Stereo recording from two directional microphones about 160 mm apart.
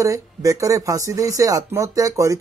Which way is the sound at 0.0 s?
20° right (ahead or behind).